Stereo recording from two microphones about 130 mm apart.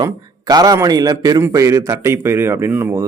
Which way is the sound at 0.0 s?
30° right (ahead or behind).